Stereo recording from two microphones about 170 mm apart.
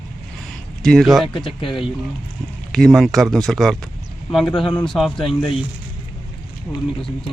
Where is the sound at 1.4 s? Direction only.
25° left (ahead or behind).